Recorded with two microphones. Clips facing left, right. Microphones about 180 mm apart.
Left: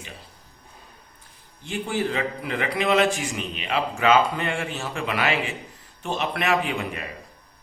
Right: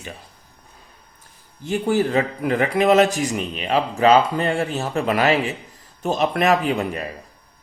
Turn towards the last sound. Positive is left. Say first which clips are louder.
# right 5 dB
turn(degrees=-40)  # may be behind; listen again after turning